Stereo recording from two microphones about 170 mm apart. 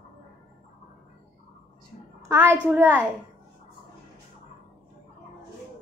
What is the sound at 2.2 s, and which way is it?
Speech, 15° right (ahead or behind).